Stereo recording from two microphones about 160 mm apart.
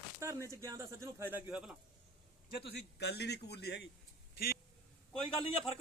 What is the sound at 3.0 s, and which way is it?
Speech, 90° left.